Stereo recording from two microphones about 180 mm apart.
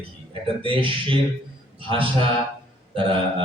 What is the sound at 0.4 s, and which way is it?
Speech, 30° right (ahead or behind).